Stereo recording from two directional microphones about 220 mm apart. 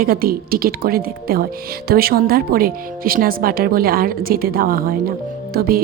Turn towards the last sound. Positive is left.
turn(degrees=-45)  # may be behind; listen again after turning